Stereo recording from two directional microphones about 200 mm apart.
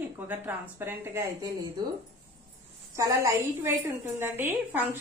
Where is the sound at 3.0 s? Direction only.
15° right (ahead or behind).